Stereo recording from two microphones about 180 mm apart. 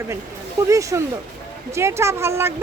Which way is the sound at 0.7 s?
15° right (ahead or behind).